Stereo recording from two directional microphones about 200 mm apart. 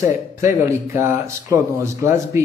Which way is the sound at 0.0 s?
15° right (ahead or behind).